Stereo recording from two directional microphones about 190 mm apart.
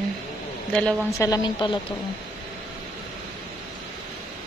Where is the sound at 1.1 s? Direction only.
15° left (ahead or behind).